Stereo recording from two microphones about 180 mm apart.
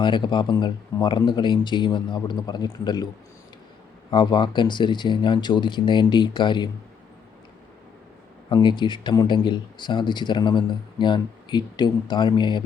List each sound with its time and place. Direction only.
0.0 s speech: 25° left (ahead or behind)
4.1 s speech: 25° left (ahead or behind)
8.4 s speech: 25° left (ahead or behind)